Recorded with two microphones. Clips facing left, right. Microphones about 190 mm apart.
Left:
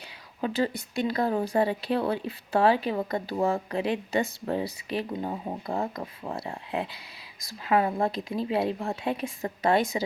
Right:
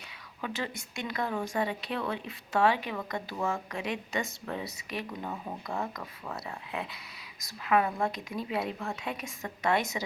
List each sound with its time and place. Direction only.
0.4 s speech: 35° left (ahead or behind)